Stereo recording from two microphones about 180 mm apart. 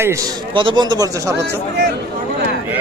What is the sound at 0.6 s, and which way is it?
Speech, 25° right (ahead or behind).